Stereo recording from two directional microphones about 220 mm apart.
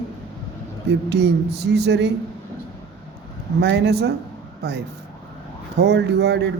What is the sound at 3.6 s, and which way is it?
Speech, 50° right (ahead or behind).